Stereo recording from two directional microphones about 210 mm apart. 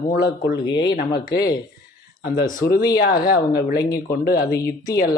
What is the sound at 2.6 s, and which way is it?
Speech, 45° left (ahead or behind).